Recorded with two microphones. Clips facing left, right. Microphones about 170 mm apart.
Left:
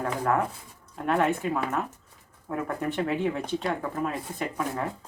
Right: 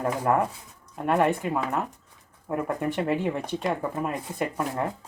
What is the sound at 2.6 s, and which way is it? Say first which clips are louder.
Speech: right 2 dB; 15° right (ahead or behind).